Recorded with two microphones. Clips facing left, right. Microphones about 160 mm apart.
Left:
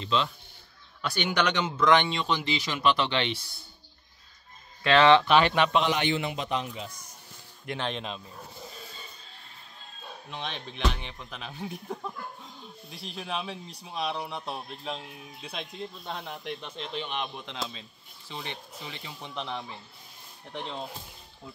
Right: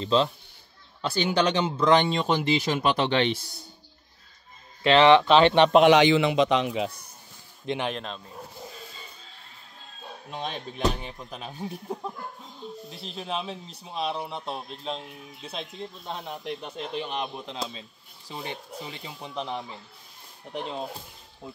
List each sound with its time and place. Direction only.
0.0 s speech: 35° right (ahead or behind)
4.8 s speech: 20° right (ahead or behind)
5.8 s a man's voice: 85° right
7.6 s speech: 15° right (ahead or behind)
7.9 s speech: 5° left (ahead or behind)
10.3 s speech: 40° right (ahead or behind)
11.9 s speech: 20° right (ahead or behind)
13.2 s speech: 30° right (ahead or behind)
15.4 s speech: 30° right (ahead or behind)
20.5 s speech: 15° right (ahead or behind)